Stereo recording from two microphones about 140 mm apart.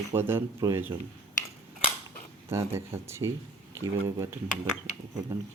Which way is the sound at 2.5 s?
20° right (ahead or behind).